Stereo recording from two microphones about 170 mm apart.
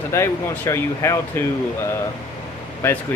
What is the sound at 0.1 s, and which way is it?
Speech, 15° left (ahead or behind).